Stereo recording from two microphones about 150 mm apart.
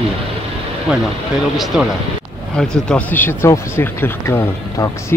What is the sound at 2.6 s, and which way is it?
Speech, 5° left (ahead or behind).